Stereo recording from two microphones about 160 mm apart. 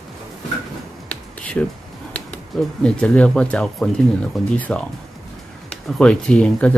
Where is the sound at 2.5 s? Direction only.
5° left (ahead or behind).